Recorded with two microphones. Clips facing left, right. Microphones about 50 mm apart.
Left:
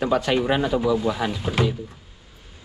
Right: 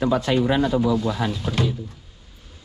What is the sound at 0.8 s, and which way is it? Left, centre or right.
Speech, left.